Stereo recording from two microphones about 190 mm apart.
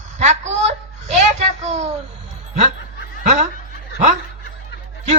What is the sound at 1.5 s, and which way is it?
Speech, 35° right (ahead or behind).